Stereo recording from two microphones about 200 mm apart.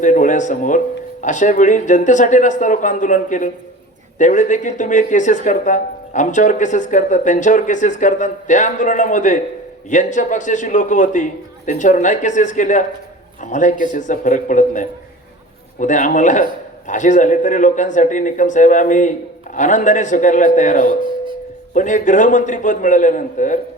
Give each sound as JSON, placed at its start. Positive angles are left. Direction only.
{"t": 0.0, "sound": "speech", "side_deg": 40}